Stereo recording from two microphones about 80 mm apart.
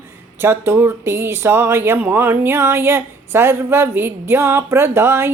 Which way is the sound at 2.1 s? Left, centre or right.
Right.